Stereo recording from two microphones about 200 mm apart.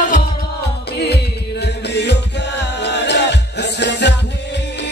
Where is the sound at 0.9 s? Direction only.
55° left (ahead or behind).